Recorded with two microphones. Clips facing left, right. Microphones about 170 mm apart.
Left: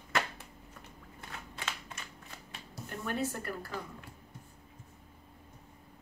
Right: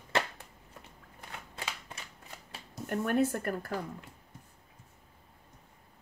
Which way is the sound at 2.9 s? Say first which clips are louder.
Right 7 dB; 55° right (ahead or behind).